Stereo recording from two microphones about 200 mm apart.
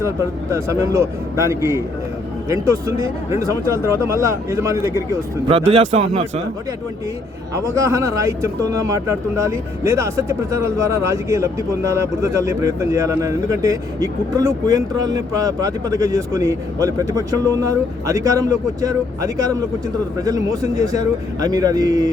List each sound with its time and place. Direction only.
0.5 s speech: 15° right (ahead or behind)
5.5 s speech: 25° right (ahead or behind)
7.5 s speech: 15° right (ahead or behind)